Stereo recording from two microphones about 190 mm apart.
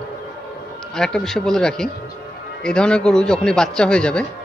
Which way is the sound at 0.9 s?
5° left (ahead or behind).